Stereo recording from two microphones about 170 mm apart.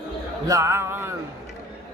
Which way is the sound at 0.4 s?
20° right (ahead or behind).